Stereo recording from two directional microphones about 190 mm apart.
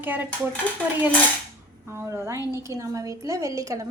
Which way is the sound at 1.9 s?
15° right (ahead or behind).